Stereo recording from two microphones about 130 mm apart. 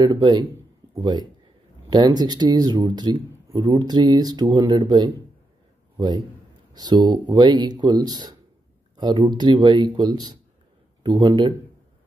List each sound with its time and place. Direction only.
0.0 s a man's voice: 30° right (ahead or behind)